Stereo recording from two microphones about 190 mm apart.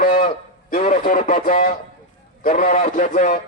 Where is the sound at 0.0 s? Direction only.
45° left (ahead or behind).